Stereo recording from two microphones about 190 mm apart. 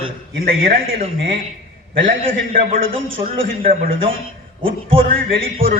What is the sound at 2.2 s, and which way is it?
A man's voice, 50° right (ahead or behind).